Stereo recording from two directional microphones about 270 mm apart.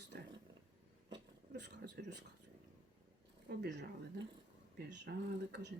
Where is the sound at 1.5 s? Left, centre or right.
Right.